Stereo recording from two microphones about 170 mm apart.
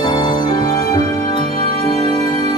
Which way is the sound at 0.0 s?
25° left (ahead or behind).